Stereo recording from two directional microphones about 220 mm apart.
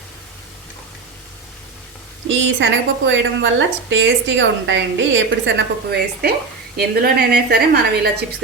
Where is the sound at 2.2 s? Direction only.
55° right (ahead or behind).